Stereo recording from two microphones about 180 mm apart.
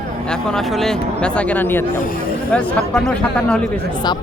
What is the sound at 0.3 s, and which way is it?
Speech, centre (ahead or behind).